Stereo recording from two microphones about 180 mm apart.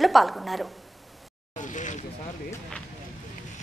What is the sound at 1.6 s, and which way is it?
Vehicle, 45° left (ahead or behind).